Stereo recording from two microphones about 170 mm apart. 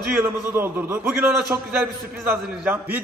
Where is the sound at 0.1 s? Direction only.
15° right (ahead or behind).